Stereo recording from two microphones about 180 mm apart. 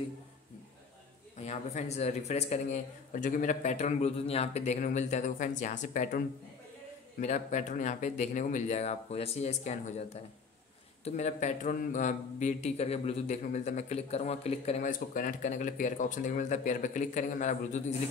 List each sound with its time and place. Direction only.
1.4 s a man's voice: 40° left (ahead or behind)
11.1 s a man's voice: 40° left (ahead or behind)